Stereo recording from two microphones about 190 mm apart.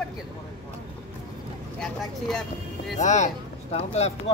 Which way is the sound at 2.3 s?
Centre (ahead or behind).